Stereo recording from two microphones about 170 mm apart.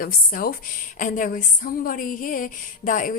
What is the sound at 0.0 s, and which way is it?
A woman's voice, 55° left (ahead or behind).